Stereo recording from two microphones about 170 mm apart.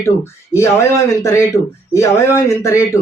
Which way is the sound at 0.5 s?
15° left (ahead or behind).